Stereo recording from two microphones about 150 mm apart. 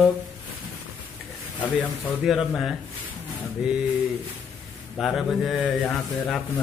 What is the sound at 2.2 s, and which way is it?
Speech, centre (ahead or behind).